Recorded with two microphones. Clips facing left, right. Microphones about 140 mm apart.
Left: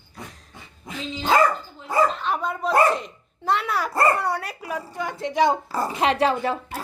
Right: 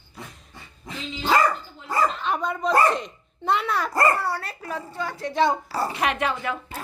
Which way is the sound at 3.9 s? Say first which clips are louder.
Left 2 dB; 25° left (ahead or behind).